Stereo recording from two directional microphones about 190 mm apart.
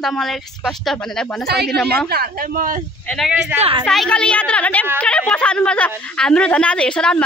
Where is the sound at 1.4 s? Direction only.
55° right (ahead or behind).